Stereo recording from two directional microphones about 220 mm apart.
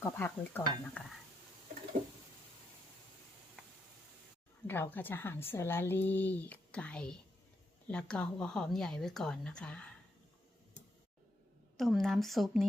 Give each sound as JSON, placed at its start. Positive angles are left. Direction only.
{"t": 0.0, "sound": "speech", "side_deg": 10}
{"t": 4.6, "sound": "speech", "side_deg": 10}
{"t": 11.8, "sound": "speech", "side_deg": 0}